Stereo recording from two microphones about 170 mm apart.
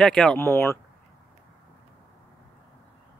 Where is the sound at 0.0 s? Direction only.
5° left (ahead or behind).